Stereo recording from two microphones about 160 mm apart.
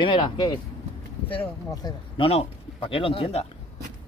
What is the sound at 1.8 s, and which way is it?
Speech, 35° left (ahead or behind).